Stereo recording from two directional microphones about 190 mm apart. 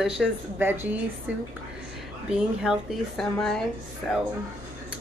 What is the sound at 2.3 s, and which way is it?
A woman's voice, centre (ahead or behind).